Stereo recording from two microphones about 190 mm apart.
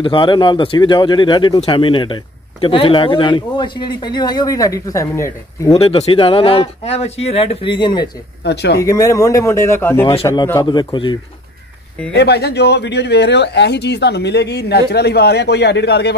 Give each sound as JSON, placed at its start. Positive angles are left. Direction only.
{"t": 0.0, "sound": "speech", "side_deg": 25}
{"t": 5.7, "sound": "speech", "side_deg": 30}
{"t": 8.5, "sound": "speech", "side_deg": 60}
{"t": 8.7, "sound": "speech", "side_deg": 15}
{"t": 12.1, "sound": "speech", "side_deg": 60}